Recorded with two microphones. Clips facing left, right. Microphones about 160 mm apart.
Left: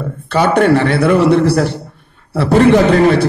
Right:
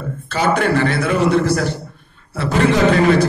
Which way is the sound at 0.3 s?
60° left (ahead or behind).